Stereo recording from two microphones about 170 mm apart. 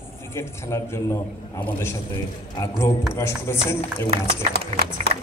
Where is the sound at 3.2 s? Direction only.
15° left (ahead or behind).